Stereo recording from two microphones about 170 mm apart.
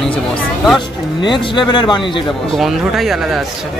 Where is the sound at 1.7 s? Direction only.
25° left (ahead or behind).